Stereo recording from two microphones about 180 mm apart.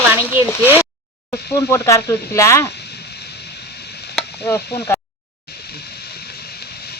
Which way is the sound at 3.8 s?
65° left (ahead or behind).